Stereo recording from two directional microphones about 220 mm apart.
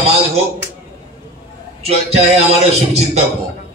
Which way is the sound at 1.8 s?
30° right (ahead or behind).